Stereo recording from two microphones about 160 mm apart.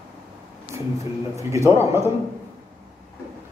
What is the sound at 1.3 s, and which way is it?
Speech, 20° right (ahead or behind).